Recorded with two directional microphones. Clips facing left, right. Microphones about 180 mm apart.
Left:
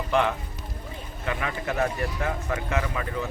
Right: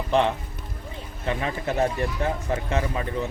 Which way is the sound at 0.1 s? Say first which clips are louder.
Right 2 dB; 30° right (ahead or behind).